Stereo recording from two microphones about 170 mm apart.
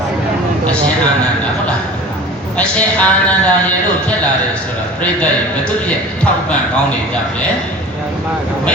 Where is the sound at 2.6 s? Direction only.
5° left (ahead or behind).